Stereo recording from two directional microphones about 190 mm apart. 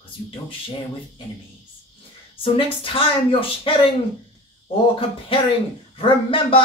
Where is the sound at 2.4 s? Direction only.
30° left (ahead or behind).